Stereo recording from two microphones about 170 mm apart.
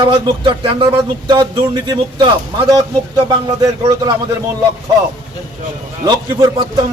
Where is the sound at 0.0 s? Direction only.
30° right (ahead or behind).